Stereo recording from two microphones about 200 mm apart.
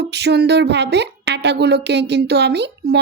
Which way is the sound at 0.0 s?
55° right (ahead or behind).